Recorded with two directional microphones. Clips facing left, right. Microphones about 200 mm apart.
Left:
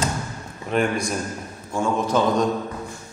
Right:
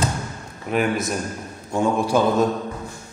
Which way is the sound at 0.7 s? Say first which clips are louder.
Right 1 dB; 5° right (ahead or behind).